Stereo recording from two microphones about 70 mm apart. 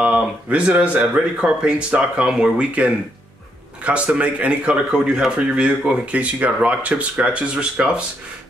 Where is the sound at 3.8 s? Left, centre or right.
Centre.